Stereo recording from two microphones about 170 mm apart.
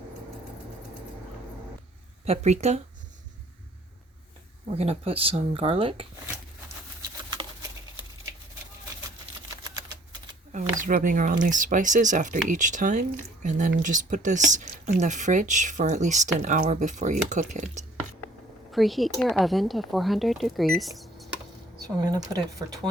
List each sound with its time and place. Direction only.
2.2 s speech: 40° right (ahead or behind)
4.7 s speech: 35° right (ahead or behind)
7.2 s patter: 25° right (ahead or behind)
10.5 s speech: 50° right (ahead or behind)
18.7 s speech: centre (ahead or behind)
21.8 s speech: 20° right (ahead or behind)